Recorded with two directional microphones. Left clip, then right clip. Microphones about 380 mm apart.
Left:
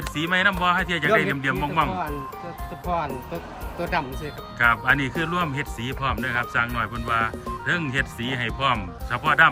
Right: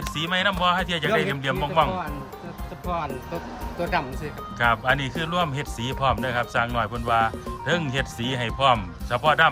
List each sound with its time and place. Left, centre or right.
0.2 s speech: centre